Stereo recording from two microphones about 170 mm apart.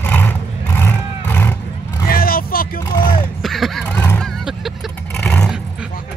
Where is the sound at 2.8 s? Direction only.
20° left (ahead or behind).